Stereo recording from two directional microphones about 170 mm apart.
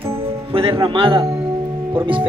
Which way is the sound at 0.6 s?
30° right (ahead or behind).